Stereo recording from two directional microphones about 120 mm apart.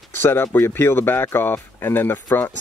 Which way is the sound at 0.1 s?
20° left (ahead or behind).